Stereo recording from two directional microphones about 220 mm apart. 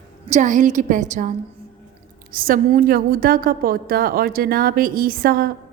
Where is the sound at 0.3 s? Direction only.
35° right (ahead or behind).